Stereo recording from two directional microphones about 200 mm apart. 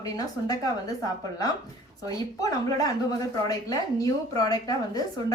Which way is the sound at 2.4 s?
20° left (ahead or behind).